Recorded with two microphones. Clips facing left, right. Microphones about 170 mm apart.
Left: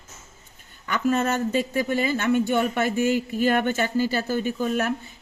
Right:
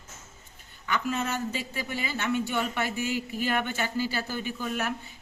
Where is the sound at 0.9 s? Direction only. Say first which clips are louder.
Left 7 dB; 50° left (ahead or behind).